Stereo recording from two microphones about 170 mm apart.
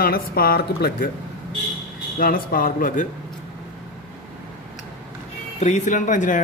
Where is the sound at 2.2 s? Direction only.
55° left (ahead or behind).